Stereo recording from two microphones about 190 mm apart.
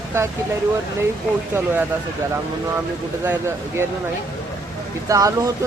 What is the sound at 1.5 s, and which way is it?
Speech, 10° right (ahead or behind).